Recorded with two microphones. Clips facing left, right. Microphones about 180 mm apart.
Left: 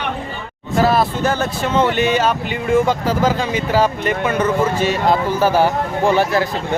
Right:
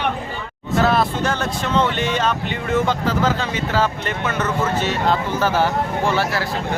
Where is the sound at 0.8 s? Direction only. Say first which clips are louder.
Left 3 dB; 5° left (ahead or behind).